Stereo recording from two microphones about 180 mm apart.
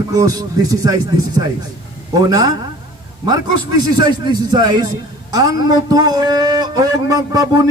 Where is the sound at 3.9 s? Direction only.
25° right (ahead or behind).